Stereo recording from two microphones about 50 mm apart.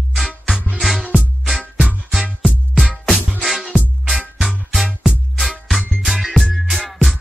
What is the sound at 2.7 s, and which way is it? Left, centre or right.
Music, centre.